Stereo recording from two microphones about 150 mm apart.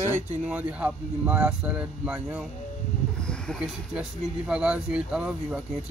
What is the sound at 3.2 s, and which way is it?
Speech, 5° left (ahead or behind).